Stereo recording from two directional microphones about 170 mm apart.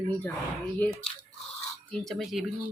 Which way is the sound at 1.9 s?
5° left (ahead or behind).